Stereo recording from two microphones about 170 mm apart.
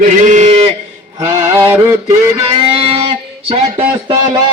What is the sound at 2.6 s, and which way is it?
Music, 35° right (ahead or behind).